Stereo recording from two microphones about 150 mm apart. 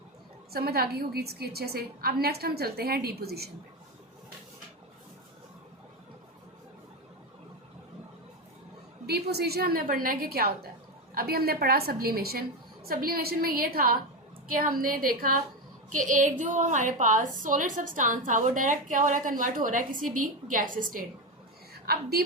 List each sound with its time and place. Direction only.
0.5 s a woman's voice: 90° right
9.0 s a woman's voice: 90° right
11.1 s a woman's voice: 80° right
12.9 s a woman's voice: 80° right
15.9 s a woman's voice: 60° right (ahead or behind)
21.9 s a woman's voice: 90° right